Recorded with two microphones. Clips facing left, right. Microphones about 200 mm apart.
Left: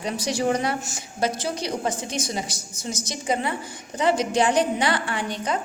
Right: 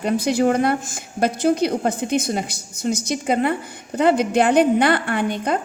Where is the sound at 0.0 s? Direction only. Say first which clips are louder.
Right 7 dB; 55° right (ahead or behind).